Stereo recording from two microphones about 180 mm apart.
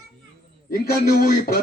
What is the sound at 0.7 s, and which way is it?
Speech, 55° left (ahead or behind).